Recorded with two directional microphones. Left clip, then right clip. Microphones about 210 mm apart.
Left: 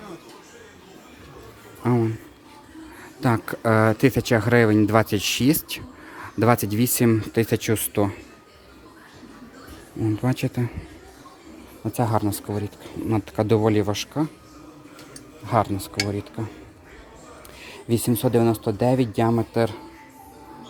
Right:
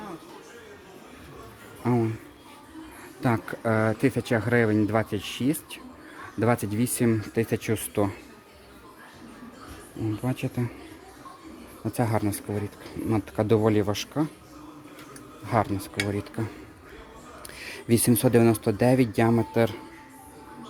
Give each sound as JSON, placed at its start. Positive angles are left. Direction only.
{"t": 1.8, "sound": "speech", "side_deg": 10}
{"t": 3.2, "sound": "speech", "side_deg": 15}
{"t": 10.2, "sound": "speech", "side_deg": 15}
{"t": 11.9, "sound": "speech", "side_deg": 0}
{"t": 15.4, "sound": "speech", "side_deg": 5}
{"t": 17.6, "sound": "speech", "side_deg": -5}